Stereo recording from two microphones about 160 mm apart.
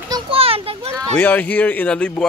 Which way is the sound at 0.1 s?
35° right (ahead or behind).